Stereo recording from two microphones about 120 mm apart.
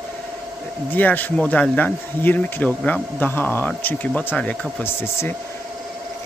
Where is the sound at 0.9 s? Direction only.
15° left (ahead or behind).